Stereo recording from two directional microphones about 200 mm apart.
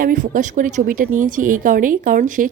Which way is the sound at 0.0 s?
40° right (ahead or behind).